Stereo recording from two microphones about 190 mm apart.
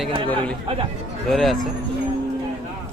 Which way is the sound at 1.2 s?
Centre (ahead or behind).